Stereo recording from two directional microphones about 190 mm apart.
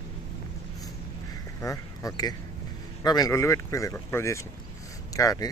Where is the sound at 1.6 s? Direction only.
15° left (ahead or behind).